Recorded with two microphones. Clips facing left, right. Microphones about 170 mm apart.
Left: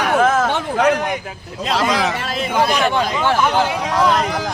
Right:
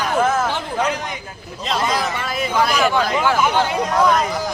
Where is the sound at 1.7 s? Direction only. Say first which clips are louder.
Left 3 dB; 80° left.